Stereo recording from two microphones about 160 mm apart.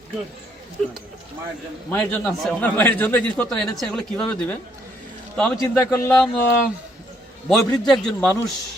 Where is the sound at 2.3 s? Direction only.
5° left (ahead or behind).